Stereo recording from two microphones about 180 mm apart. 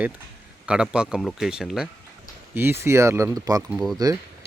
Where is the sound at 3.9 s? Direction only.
20° right (ahead or behind).